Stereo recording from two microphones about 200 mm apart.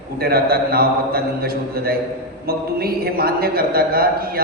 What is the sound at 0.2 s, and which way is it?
A man's voice, 50° right (ahead or behind).